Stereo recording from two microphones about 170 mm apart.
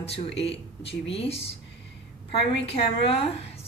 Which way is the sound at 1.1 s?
35° left (ahead or behind).